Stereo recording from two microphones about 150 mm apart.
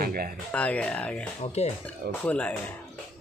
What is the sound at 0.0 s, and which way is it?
Music, 85° right.